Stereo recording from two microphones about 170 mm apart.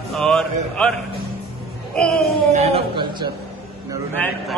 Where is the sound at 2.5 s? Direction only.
40° right (ahead or behind).